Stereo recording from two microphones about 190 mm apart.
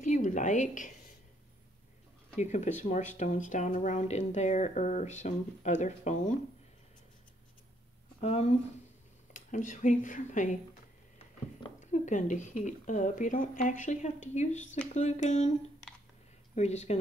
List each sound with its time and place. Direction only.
0.0 s a sound: 40° left (ahead or behind)
2.3 s speech: 40° left (ahead or behind)
8.2 s speech: 35° left (ahead or behind)
16.5 s speech: 35° left (ahead or behind)